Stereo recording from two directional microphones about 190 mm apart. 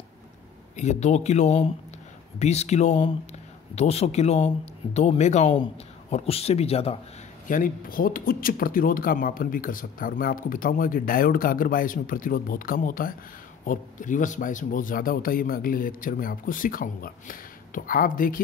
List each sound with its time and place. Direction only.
0.7 s a man's voice: 35° left (ahead or behind)
7.4 s speech: 45° left (ahead or behind)